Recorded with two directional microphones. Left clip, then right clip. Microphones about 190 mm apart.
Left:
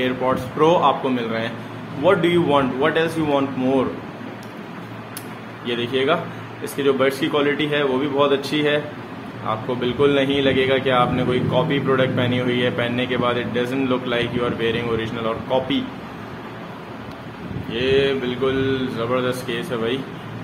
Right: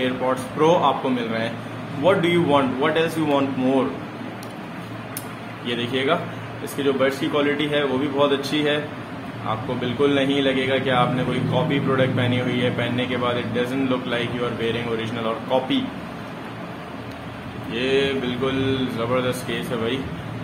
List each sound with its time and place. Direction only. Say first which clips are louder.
0.0 s a man's voice: left 2 dB; 15° left (ahead or behind)
5.7 s a man's voice: left 2 dB; 10° left (ahead or behind)
17.7 s a man's voice: left 3 dB; 10° left (ahead or behind)